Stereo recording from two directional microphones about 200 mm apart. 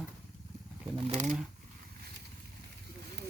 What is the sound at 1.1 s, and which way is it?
Speech, 35° right (ahead or behind).